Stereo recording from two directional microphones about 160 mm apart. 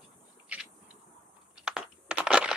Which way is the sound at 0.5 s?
10° right (ahead or behind).